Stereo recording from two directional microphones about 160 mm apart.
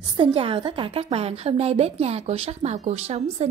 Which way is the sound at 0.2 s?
35° right (ahead or behind).